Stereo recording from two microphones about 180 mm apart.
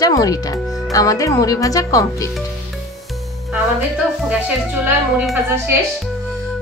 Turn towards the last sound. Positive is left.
turn(degrees=-10)  # may be behind; listen again after turning